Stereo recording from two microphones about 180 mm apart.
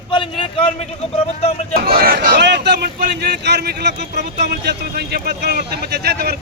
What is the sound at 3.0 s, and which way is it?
Speech, 65° right (ahead or behind).